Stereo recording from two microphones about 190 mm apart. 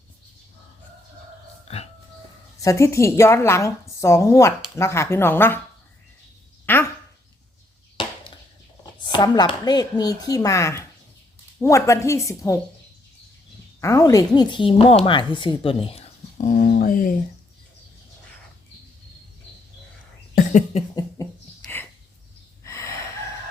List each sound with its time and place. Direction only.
1.6 s a sound: 35° left (ahead or behind)
2.6 s speech: 15° left (ahead or behind)
6.7 s dog: 10° left (ahead or behind)
8.0 s chop: 25° left (ahead or behind)
9.1 s speech: 20° left (ahead or behind)
13.8 s speech: 15° left (ahead or behind)
16.5 s speech: 50° left (ahead or behind)
20.3 s a sound: 40° left (ahead or behind)
20.9 s a sound: 20° left (ahead or behind)
22.6 s gasp: 15° left (ahead or behind)